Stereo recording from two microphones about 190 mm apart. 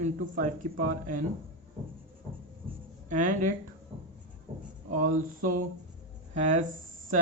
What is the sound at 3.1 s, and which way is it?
Speech, 40° right (ahead or behind).